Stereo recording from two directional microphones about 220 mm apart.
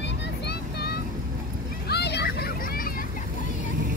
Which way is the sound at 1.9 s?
50° left (ahead or behind).